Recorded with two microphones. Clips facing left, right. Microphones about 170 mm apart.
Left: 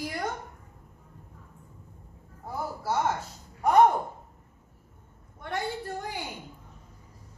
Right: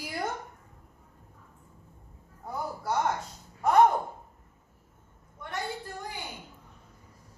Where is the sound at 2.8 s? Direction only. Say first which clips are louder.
Left 1 dB; 5° left (ahead or behind).